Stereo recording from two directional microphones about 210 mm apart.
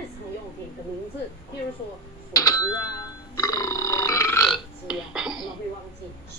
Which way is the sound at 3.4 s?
15° left (ahead or behind).